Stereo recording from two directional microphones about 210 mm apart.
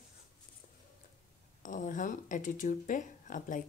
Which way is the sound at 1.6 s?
40° left (ahead or behind).